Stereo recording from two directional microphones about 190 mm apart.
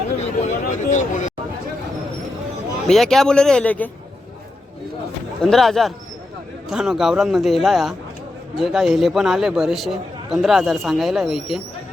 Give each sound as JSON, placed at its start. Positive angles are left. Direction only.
{"t": 0.4, "sound": "vehicle", "side_deg": 40}
{"t": 2.8, "sound": "a man's voice", "side_deg": 0}
{"t": 5.4, "sound": "a man's voice", "side_deg": 0}